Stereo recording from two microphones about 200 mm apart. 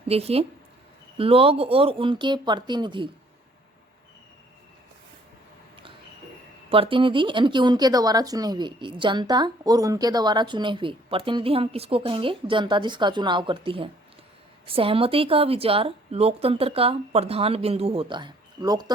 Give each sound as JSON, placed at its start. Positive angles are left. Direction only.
{"t": 0.1, "sound": "speech", "side_deg": -30}
{"t": 6.7, "sound": "speech", "side_deg": -25}